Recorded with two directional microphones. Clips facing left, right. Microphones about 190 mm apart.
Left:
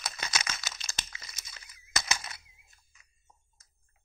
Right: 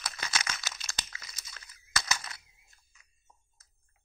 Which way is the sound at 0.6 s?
5° right (ahead or behind).